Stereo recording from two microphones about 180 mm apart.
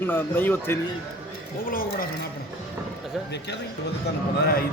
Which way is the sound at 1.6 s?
50° left (ahead or behind).